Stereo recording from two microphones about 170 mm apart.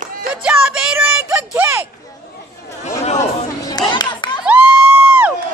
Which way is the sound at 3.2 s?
25° left (ahead or behind).